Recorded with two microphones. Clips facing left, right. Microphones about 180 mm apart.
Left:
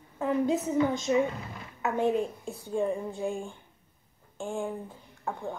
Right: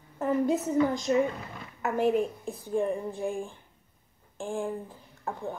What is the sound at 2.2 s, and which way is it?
Speech, 15° right (ahead or behind).